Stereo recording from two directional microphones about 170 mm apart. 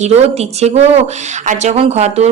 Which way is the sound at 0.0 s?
40° right (ahead or behind).